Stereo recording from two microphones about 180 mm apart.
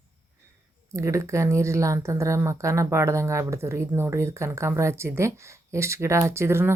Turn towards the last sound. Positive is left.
turn(degrees=-15)  # may be behind; listen again after turning